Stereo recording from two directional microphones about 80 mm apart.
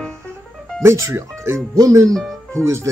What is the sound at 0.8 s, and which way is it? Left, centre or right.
Speech, right.